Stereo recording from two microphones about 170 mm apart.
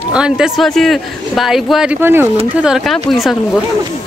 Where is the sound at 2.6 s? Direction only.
5° right (ahead or behind).